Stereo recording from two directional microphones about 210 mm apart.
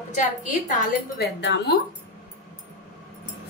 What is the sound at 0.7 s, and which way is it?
A woman's voice, 45° left (ahead or behind).